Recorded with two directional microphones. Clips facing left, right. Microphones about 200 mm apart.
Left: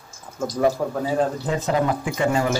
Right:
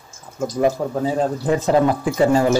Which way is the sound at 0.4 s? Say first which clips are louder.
Right 2 dB; 20° right (ahead or behind).